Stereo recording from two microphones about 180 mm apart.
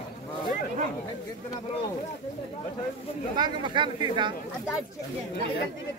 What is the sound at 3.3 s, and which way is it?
Speech, 25° right (ahead or behind).